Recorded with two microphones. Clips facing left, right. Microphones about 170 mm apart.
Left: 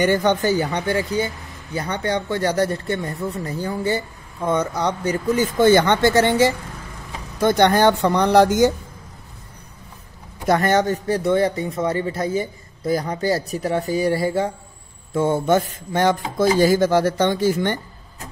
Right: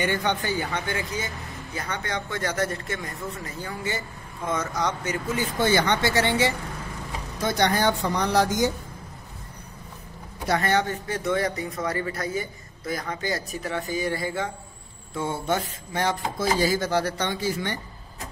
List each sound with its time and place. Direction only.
0.0 s speech: 40° left (ahead or behind)
7.4 s speech: 60° left (ahead or behind)
10.4 s speech: 45° left (ahead or behind)
15.1 s speech: 50° left (ahead or behind)